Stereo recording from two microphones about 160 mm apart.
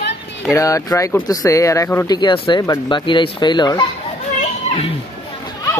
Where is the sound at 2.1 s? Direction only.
30° left (ahead or behind).